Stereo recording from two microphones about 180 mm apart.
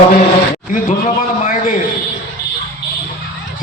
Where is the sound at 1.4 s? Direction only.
45° left (ahead or behind).